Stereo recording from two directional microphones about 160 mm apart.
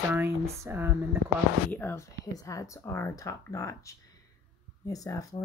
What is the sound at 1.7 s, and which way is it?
Speech, 15° left (ahead or behind).